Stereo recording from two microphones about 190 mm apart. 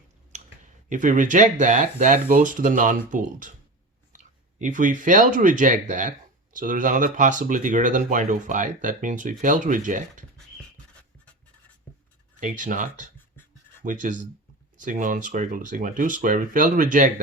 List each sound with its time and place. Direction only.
0.3 s speech: 40° right (ahead or behind)
11.9 s writing: 10° left (ahead or behind)
12.4 s speech: 45° right (ahead or behind)